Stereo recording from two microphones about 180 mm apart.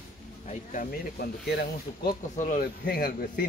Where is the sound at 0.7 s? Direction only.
45° left (ahead or behind).